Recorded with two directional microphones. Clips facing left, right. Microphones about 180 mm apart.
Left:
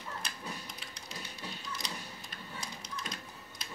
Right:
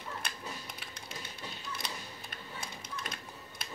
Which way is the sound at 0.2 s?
55° right (ahead or behind).